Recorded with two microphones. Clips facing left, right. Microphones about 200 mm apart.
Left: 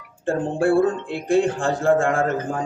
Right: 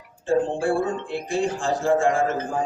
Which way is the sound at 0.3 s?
60° left (ahead or behind).